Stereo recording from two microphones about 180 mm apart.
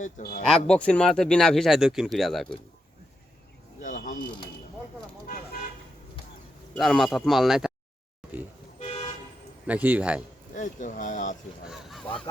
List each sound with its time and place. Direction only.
0.0 s speech: 55° left (ahead or behind)
0.5 s speech: 5° left (ahead or behind)
3.8 s a sound: 45° left (ahead or behind)
6.7 s speech: centre (ahead or behind)
9.6 s a man's voice: 10° right (ahead or behind)
10.5 s speech: 45° left (ahead or behind)
11.7 s goose: centre (ahead or behind)